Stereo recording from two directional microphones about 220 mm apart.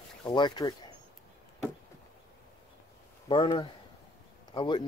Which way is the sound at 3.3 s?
20° left (ahead or behind).